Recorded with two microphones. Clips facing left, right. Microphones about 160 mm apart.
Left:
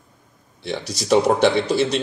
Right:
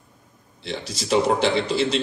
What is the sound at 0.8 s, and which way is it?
Speech, 40° left (ahead or behind).